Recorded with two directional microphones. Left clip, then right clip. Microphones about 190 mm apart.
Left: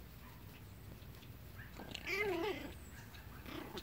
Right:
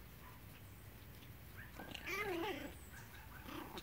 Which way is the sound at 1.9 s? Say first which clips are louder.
Left 4 dB; 15° right (ahead or behind).